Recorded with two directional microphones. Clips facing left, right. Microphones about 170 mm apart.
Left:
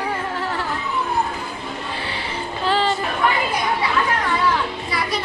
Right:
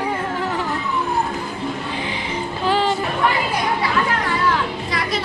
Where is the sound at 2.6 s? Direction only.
15° right (ahead or behind).